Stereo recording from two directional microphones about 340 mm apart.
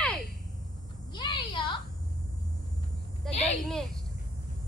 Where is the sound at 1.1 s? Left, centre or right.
Centre.